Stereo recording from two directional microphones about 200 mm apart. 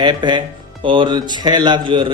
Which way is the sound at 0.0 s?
25° right (ahead or behind).